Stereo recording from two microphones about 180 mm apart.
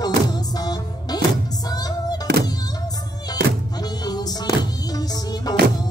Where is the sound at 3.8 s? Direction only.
20° left (ahead or behind).